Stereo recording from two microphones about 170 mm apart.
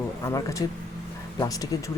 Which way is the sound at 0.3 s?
20° left (ahead or behind).